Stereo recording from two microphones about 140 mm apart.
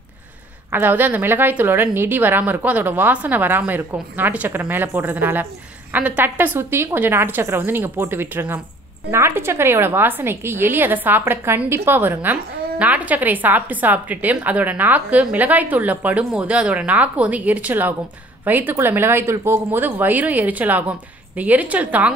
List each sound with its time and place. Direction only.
0.7 s a woman's voice: 15° right (ahead or behind)